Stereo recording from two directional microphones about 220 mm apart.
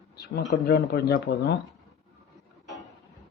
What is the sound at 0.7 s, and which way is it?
Speech, 45° left (ahead or behind).